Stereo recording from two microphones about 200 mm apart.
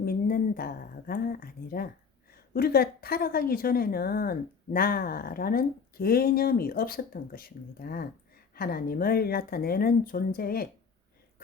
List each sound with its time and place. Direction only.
0.0 s a woman's voice: 50° left (ahead or behind)